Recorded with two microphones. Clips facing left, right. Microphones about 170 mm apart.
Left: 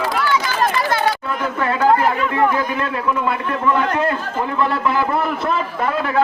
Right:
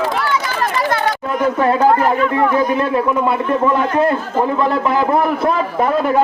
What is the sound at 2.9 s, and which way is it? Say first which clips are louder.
A man's voice: right 5 dB; 30° right (ahead or behind).